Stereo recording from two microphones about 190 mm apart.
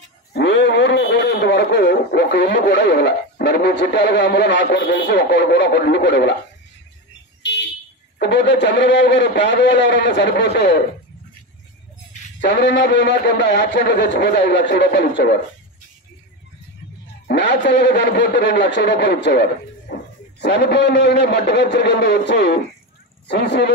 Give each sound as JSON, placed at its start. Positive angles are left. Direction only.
{"t": 0.3, "sound": "speech", "side_deg": 65}
{"t": 7.4, "sound": "a sound", "side_deg": 70}
{"t": 8.2, "sound": "a man's voice", "side_deg": 65}
{"t": 12.4, "sound": "speech", "side_deg": 65}
{"t": 17.3, "sound": "speech", "side_deg": 65}